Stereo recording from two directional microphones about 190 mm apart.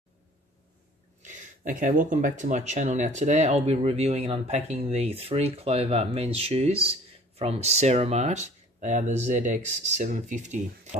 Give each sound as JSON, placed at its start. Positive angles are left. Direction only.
{"t": 1.2, "sound": "speech", "side_deg": -40}